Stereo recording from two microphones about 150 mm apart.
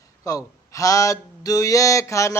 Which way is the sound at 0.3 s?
20° left (ahead or behind).